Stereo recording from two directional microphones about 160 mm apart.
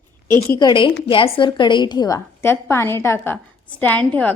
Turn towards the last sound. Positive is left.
turn(degrees=10)  # may be behind; listen again after turning